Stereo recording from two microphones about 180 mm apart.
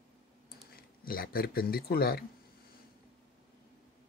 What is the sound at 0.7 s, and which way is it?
Speech, 55° left (ahead or behind).